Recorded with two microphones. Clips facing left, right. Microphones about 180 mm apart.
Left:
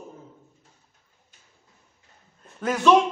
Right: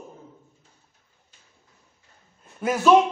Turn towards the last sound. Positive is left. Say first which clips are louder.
# right 1 dB
turn(degrees=-5)  # may be behind; listen again after turning